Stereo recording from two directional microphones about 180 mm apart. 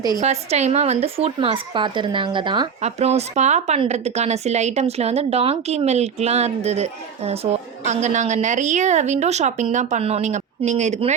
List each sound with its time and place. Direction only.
0.2 s a woman's voice: 40° right (ahead or behind)